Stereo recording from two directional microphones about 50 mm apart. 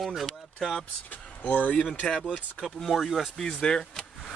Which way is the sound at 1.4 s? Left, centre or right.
Left.